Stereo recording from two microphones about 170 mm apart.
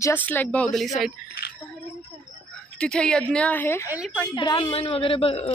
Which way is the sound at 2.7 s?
5° left (ahead or behind).